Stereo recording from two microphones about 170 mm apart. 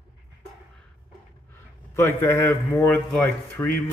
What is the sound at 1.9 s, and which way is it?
Speech, 15° left (ahead or behind).